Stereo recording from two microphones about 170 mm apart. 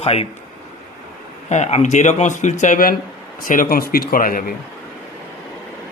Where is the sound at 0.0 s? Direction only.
35° left (ahead or behind).